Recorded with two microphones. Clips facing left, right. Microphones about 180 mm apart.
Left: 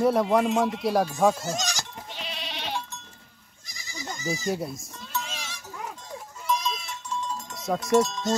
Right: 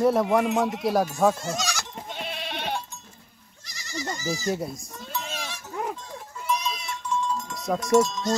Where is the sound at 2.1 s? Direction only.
55° right (ahead or behind).